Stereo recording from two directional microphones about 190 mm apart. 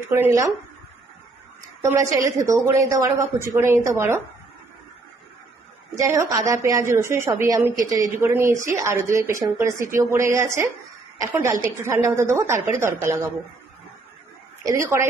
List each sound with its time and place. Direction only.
0.1 s a woman's voice: 15° right (ahead or behind)
1.8 s a woman's voice: 15° right (ahead or behind)
5.9 s a woman's voice: 15° right (ahead or behind)
14.6 s a woman's voice: 15° right (ahead or behind)